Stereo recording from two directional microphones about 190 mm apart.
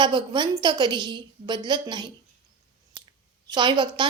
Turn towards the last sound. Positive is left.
turn(degrees=-25)  # may be behind; listen again after turning